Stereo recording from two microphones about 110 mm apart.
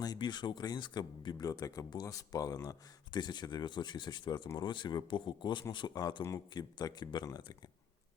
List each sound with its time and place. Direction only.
0.0 s speech: 40° left (ahead or behind)